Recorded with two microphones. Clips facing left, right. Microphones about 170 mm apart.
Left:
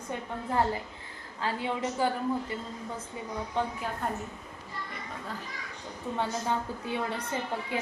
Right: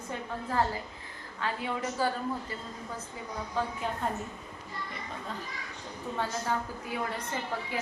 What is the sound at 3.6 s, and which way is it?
Speech, 20° left (ahead or behind).